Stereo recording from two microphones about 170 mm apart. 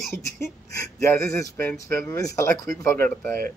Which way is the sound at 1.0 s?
15° left (ahead or behind).